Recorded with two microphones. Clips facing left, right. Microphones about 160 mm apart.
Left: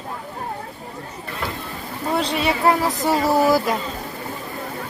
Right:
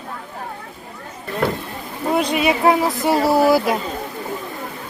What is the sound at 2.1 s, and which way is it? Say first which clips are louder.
Speech: right 3 dB; 10° right (ahead or behind).